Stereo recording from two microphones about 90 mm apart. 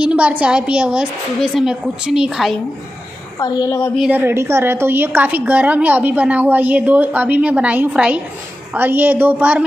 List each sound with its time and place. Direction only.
0.0 s a woman's voice: 15° right (ahead or behind)
3.3 s a woman's voice: 40° left (ahead or behind)
4.1 s a woman's voice: 25° right (ahead or behind)